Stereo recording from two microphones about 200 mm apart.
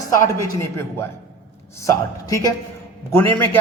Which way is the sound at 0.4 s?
15° left (ahead or behind).